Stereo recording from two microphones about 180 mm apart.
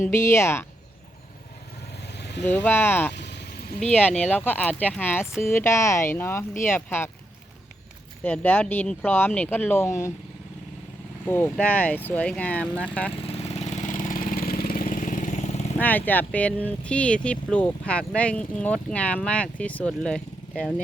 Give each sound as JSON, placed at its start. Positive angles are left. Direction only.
{"t": 0.1, "sound": "speech", "side_deg": 15}
{"t": 2.1, "sound": "vehicle", "side_deg": 70}
{"t": 2.6, "sound": "speech", "side_deg": 10}
{"t": 3.2, "sound": "vehicle", "side_deg": 70}
{"t": 4.2, "sound": "speech", "side_deg": 10}
{"t": 8.2, "sound": "speech", "side_deg": 10}
{"t": 11.3, "sound": "speech", "side_deg": 15}
{"t": 13.2, "sound": "engine", "side_deg": 35}
{"t": 15.8, "sound": "speech", "side_deg": 10}